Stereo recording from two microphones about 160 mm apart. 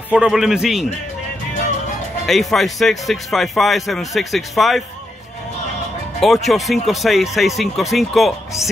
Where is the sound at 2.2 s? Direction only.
Centre (ahead or behind).